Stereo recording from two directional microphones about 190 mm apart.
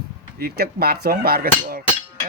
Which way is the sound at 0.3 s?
55° right (ahead or behind).